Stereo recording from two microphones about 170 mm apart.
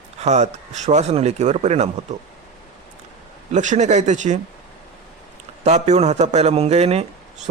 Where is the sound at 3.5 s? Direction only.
45° right (ahead or behind).